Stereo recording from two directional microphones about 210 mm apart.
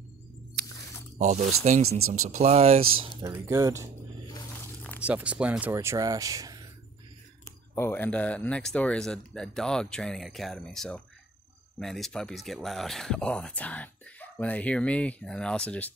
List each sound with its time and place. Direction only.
1.1 s speech: 35° right (ahead or behind)
2.0 s speech: 90° right
2.2 s speech: 35° right (ahead or behind)
3.0 s speech: 15° right (ahead or behind)
5.0 s speech: 5° right (ahead or behind)
7.7 s speech: 10° left (ahead or behind)